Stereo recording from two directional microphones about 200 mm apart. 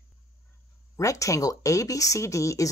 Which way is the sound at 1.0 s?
15° left (ahead or behind).